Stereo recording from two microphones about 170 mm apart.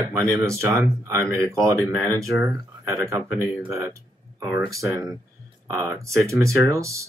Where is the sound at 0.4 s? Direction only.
15° right (ahead or behind).